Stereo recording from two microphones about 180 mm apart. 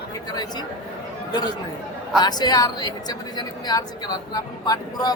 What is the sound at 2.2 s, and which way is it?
A woman's voice, 20° left (ahead or behind).